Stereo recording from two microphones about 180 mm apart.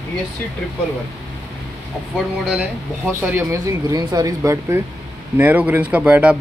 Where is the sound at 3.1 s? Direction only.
10° right (ahead or behind).